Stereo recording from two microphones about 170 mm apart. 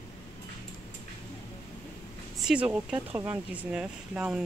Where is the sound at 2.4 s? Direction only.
5° right (ahead or behind).